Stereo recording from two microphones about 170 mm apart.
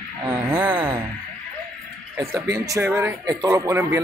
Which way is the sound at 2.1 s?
20° right (ahead or behind).